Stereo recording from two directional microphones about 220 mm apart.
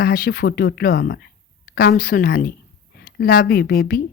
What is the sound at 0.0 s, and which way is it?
A woman's voice, 45° left (ahead or behind).